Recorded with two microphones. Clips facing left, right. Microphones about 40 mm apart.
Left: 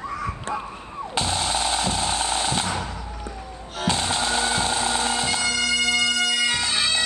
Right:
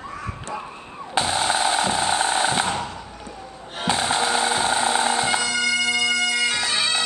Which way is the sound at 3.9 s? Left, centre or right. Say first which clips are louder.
Right 3 dB; centre.